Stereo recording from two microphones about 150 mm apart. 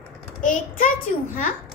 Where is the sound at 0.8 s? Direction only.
65° left (ahead or behind).